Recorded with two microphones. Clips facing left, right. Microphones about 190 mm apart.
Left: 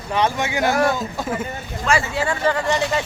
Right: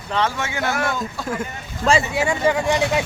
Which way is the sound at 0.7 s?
35° left (ahead or behind).